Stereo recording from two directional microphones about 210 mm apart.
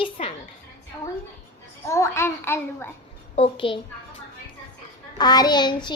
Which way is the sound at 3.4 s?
25° left (ahead or behind).